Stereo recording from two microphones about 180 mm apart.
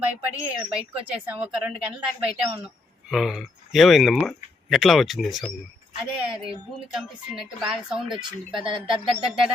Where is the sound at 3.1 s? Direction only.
Centre (ahead or behind).